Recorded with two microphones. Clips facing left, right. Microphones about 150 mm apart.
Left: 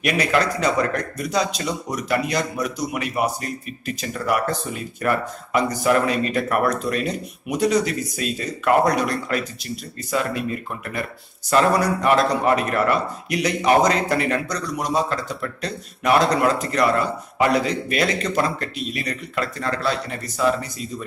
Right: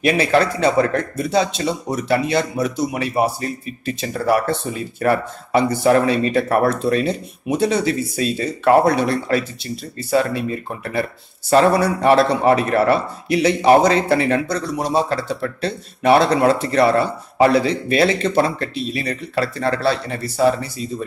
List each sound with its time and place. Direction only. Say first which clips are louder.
0.0 s a man's voice: right 4 dB; 30° right (ahead or behind)
11.5 s a man's voice: right 4 dB; 25° right (ahead or behind)